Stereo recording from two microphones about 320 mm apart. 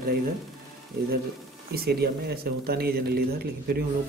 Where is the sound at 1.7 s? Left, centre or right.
Right.